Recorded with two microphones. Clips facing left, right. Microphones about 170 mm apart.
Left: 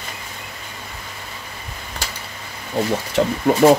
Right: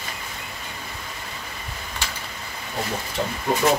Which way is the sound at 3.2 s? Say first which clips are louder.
Left 9 dB; 75° left (ahead or behind).